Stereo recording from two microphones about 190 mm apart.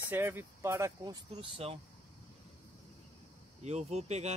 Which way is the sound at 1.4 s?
30° right (ahead or behind).